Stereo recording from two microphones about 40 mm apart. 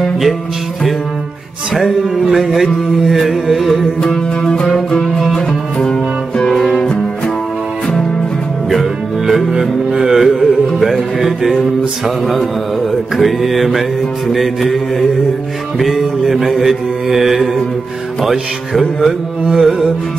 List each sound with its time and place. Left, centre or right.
1.7 s music: centre
4.0 s music: centre
5.2 s music: centre
5.9 s music: centre
8.6 s music: centre
13.2 s music: centre